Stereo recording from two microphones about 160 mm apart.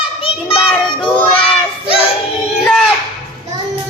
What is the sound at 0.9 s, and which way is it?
Child singing, 30° left (ahead or behind).